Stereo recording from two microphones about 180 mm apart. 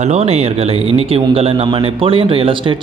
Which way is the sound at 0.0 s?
35° right (ahead or behind).